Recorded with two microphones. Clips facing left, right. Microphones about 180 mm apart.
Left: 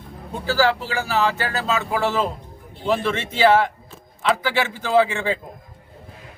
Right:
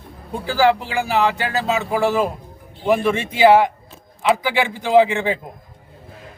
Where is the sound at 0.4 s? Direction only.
15° right (ahead or behind).